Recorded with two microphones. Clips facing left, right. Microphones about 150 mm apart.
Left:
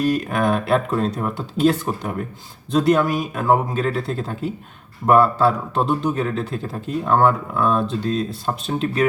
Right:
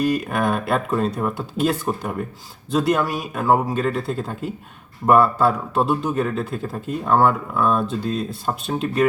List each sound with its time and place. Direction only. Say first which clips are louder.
0.0 s a man's voice: left 1 dB; centre (ahead or behind)